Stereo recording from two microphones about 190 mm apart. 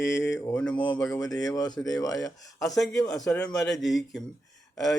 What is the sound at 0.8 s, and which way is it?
A man's voice, 20° left (ahead or behind).